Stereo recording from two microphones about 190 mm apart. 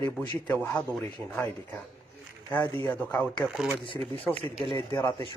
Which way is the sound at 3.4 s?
5° right (ahead or behind).